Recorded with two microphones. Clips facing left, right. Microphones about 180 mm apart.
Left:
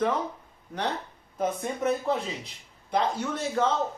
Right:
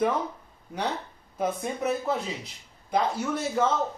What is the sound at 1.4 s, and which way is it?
Speech, 5° right (ahead or behind).